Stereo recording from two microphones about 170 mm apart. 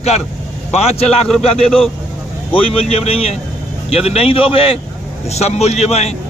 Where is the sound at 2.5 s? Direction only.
35° left (ahead or behind).